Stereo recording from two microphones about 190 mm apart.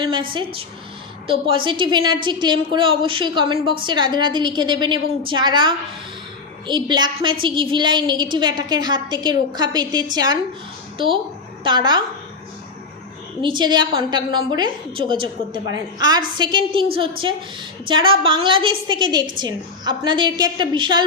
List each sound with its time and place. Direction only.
1.3 s a woman's voice: 25° right (ahead or behind)
13.4 s a woman's voice: 25° right (ahead or behind)